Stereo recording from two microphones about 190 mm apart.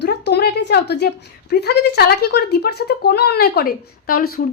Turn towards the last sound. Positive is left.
turn(degrees=50)  # may be behind; listen again after turning